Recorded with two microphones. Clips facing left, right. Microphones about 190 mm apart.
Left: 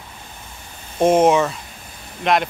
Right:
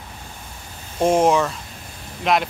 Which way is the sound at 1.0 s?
Centre (ahead or behind).